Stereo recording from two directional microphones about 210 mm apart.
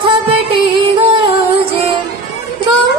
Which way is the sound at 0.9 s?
25° right (ahead or behind).